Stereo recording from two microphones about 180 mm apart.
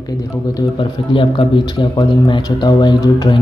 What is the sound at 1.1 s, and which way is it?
Speech, 30° left (ahead or behind).